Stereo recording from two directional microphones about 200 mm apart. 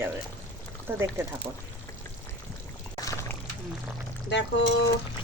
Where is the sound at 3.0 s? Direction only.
15° left (ahead or behind).